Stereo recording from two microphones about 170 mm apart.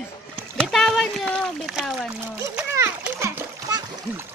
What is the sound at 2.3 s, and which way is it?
Splash, 15° right (ahead or behind).